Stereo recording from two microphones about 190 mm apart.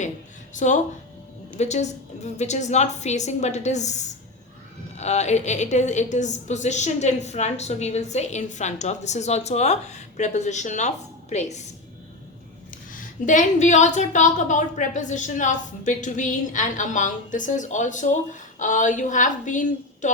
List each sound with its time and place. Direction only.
0.5 s a woman's voice: 40° left (ahead or behind)
12.9 s a woman's voice: 45° left (ahead or behind)